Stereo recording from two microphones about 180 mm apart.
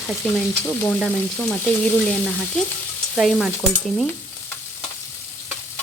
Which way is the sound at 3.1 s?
Centre (ahead or behind).